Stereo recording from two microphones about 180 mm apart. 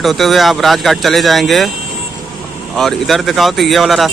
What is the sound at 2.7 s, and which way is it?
A man's voice, centre (ahead or behind).